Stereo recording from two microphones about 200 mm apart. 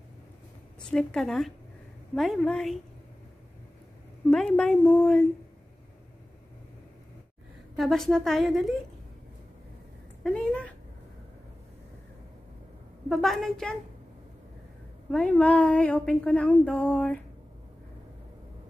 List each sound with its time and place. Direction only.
0.8 s a woman's voice: 5° left (ahead or behind)
4.3 s a woman's voice: 5° left (ahead or behind)
7.7 s a woman's voice: centre (ahead or behind)
10.2 s a sound: 5° left (ahead or behind)
13.1 s a woman's voice: centre (ahead or behind)
15.0 s speech: 5° left (ahead or behind)